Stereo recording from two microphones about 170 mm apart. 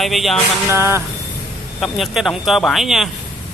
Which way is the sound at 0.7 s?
15° right (ahead or behind).